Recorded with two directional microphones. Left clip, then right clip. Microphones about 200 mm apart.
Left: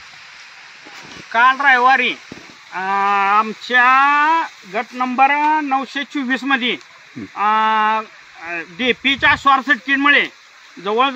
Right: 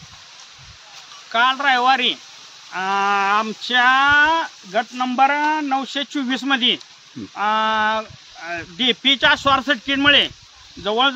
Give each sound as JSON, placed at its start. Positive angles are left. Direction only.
{"t": 1.3, "sound": "speech", "side_deg": -25}